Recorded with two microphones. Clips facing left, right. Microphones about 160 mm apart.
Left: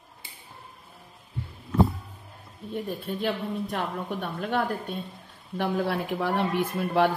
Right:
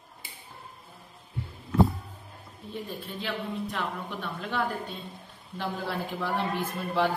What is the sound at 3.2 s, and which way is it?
A woman's voice, 50° left (ahead or behind).